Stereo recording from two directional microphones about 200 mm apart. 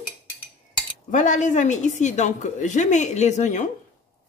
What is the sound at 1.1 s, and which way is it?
A woman's voice, 40° left (ahead or behind).